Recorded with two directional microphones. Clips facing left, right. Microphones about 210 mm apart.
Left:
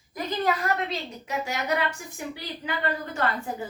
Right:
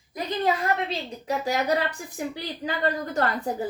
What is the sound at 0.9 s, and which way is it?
Speech, 35° right (ahead or behind).